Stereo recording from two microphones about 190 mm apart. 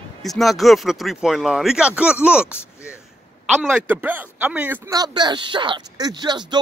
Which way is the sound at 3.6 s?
10° right (ahead or behind).